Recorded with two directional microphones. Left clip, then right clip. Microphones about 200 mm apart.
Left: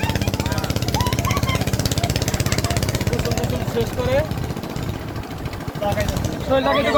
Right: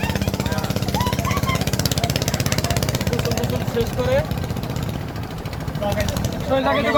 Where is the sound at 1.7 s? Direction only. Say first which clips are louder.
Right 1 dB; 20° right (ahead or behind).